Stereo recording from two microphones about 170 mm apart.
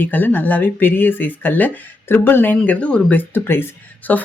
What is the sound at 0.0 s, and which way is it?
A woman's voice, 10° left (ahead or behind).